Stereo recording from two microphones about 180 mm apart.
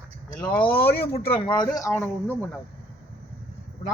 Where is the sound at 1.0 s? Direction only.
30° left (ahead or behind); by 2.5 s 10° left (ahead or behind).